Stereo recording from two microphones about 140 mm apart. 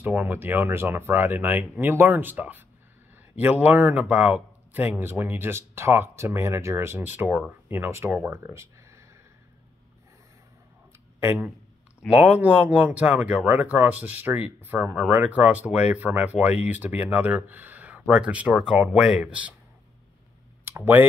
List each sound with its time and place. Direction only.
0.0 s speech: 15° right (ahead or behind)
11.1 s speech: 15° right (ahead or behind)
20.6 s a sound: 15° right (ahead or behind)